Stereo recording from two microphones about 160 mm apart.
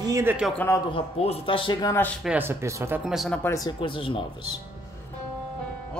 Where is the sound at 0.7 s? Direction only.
30° left (ahead or behind).